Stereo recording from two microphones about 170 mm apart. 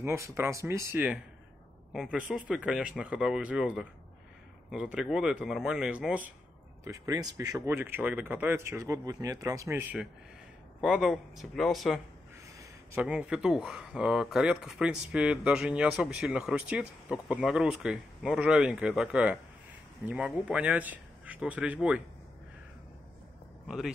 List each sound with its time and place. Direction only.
0.0 s speech: 15° right (ahead or behind)
6.8 s speech: 20° right (ahead or behind); by 12.0 s centre (ahead or behind)
12.5 s speech: 10° right (ahead or behind)